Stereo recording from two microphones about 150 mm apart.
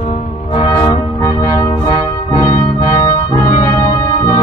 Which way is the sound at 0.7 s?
25° left (ahead or behind).